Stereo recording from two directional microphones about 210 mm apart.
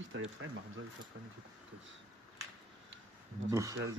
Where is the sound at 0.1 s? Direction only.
60° right (ahead or behind).